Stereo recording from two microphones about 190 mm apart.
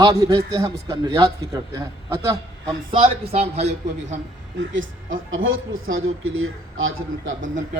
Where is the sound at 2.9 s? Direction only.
25° right (ahead or behind).